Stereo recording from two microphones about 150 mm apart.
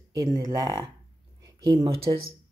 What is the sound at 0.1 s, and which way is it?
Speech, 25° right (ahead or behind).